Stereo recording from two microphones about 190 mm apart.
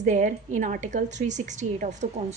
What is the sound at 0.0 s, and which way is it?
A woman's voice, 40° right (ahead or behind).